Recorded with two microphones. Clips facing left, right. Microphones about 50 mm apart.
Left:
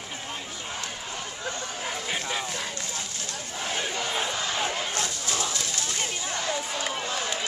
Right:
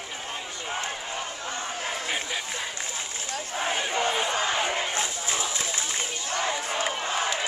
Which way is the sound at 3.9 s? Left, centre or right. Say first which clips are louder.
Right 5 dB; right.